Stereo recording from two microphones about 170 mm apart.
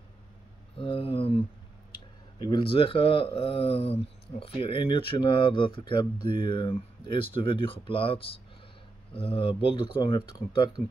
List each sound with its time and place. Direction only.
0.7 s speech: 35° left (ahead or behind)